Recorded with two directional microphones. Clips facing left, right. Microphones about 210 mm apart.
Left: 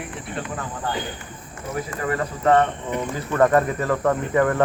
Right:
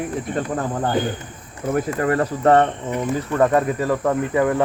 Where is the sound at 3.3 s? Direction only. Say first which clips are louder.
Even; 15° right (ahead or behind).